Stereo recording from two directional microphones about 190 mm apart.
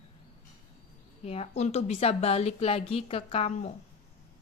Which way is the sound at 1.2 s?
35° left (ahead or behind).